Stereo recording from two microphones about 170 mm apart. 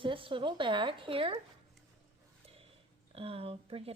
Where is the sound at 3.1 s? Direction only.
35° right (ahead or behind).